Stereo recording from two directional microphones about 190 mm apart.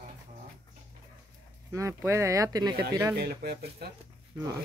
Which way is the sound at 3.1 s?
55° right (ahead or behind).